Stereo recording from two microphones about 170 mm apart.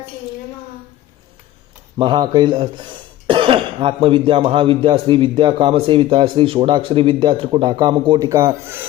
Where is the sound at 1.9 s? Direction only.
30° right (ahead or behind).